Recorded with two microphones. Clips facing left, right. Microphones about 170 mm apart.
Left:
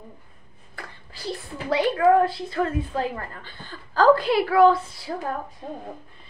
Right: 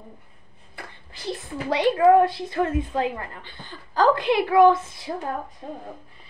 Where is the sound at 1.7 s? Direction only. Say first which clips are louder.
Right 2 dB; 20° right (ahead or behind).